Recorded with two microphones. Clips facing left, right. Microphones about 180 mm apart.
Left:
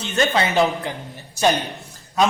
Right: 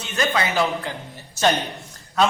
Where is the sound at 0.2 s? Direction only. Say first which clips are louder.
Left 3 dB; 25° left (ahead or behind).